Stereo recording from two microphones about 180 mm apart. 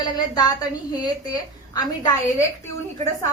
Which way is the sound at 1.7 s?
25° left (ahead or behind).